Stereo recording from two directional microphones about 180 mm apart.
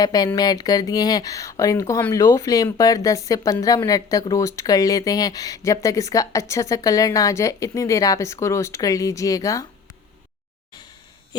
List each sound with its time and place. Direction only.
0.0 s speech: 20° left (ahead or behind)